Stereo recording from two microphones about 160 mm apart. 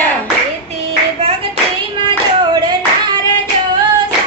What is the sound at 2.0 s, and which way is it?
Clapping, 30° right (ahead or behind).